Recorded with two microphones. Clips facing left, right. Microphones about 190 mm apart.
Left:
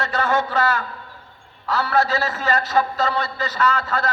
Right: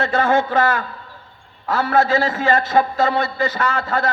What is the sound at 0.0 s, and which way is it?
A man's voice, 50° right (ahead or behind).